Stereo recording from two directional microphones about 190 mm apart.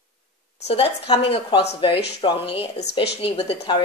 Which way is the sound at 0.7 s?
30° left (ahead or behind).